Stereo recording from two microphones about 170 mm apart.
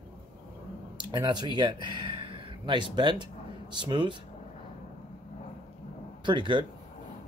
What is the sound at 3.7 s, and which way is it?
Speech, 25° right (ahead or behind).